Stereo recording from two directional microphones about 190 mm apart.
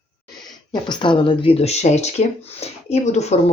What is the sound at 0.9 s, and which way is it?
Speech, 25° left (ahead or behind).